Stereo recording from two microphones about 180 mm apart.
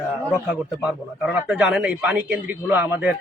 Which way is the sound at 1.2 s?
5° right (ahead or behind).